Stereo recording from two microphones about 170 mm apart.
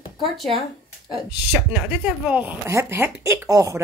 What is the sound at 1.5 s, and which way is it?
A woman's voice, 10° right (ahead or behind).